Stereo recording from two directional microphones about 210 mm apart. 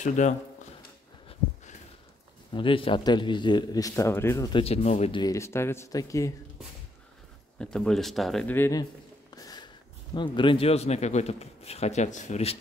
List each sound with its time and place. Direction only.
0.0 s speech: 35° left (ahead or behind)
2.5 s a man's voice: 25° left (ahead or behind)
7.5 s speech: 5° left (ahead or behind)
9.3 s a sound: 20° left (ahead or behind)
10.1 s a man's voice: 20° left (ahead or behind)